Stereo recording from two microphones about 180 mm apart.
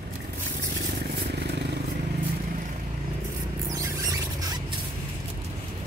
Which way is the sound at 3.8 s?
20° right (ahead or behind).